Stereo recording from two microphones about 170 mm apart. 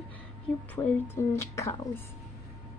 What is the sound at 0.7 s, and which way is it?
A woman's voice, 15° left (ahead or behind).